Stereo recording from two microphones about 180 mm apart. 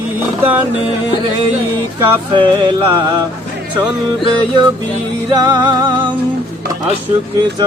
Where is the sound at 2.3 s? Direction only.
25° right (ahead or behind).